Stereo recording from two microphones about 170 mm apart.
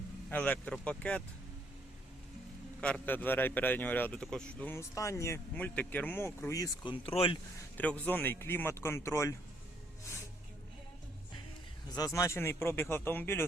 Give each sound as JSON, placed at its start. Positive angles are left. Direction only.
{"t": 0.3, "sound": "a man's voice", "side_deg": 10}
{"t": 2.8, "sound": "a man's voice", "side_deg": 10}
{"t": 6.9, "sound": "speech", "side_deg": 35}
{"t": 7.8, "sound": "a man's voice", "side_deg": 10}
{"t": 11.9, "sound": "a man's voice", "side_deg": 20}